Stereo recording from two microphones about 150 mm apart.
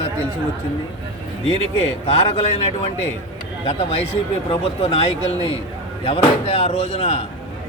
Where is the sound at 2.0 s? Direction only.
40° left (ahead or behind).